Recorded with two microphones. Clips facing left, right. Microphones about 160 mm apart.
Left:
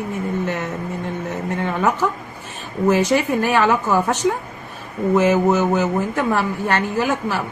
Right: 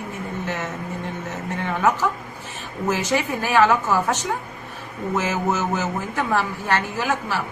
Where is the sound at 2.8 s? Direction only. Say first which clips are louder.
Left 6 dB; 60° left (ahead or behind).